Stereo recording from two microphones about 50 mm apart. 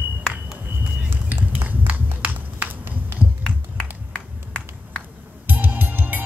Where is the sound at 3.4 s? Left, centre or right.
Centre.